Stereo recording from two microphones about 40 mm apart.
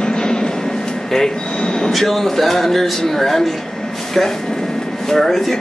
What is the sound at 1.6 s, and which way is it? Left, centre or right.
Train, left.